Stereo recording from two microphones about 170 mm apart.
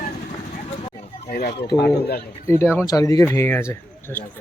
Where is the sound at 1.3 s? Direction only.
70° left (ahead or behind).